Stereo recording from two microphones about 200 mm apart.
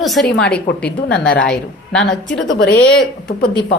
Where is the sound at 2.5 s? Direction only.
55° left (ahead or behind).